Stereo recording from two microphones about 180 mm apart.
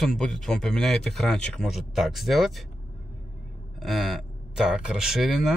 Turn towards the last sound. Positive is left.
turn(degrees=0)  # may be behind; listen again after turning